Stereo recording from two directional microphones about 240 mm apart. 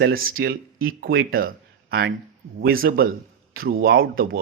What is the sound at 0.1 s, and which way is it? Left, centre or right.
Speech, right.